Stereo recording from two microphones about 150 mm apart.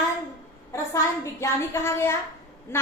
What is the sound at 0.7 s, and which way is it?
Speech, 20° left (ahead or behind).